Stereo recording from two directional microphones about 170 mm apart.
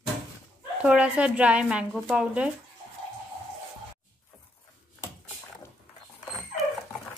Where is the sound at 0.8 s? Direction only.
5° right (ahead or behind).